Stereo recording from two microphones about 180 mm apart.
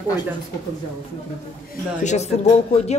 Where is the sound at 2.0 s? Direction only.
40° left (ahead or behind).